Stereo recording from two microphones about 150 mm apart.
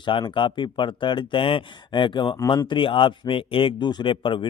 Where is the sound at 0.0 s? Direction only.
35° left (ahead or behind).